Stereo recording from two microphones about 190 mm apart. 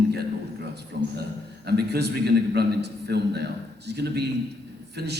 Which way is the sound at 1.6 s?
60° right (ahead or behind).